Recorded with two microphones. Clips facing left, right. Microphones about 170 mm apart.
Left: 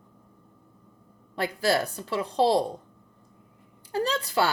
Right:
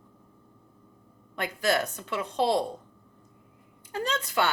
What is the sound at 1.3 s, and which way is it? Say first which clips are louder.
A woman's voice: left 2 dB; 30° left (ahead or behind).